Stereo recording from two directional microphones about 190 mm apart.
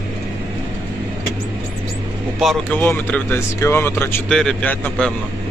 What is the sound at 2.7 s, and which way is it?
Speech, 10° left (ahead or behind).